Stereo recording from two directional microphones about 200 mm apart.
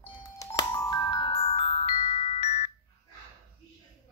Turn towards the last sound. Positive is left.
turn(degrees=30)  # may be behind; listen again after turning